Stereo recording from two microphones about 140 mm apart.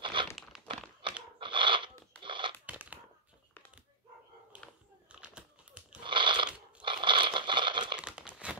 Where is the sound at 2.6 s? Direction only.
10° right (ahead or behind).